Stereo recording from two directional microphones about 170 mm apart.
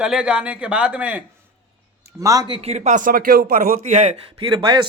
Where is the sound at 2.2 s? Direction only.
20° right (ahead or behind); by 4.2 s 45° right (ahead or behind).